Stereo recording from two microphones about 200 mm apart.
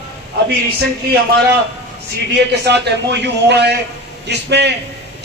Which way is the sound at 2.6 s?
60° right (ahead or behind).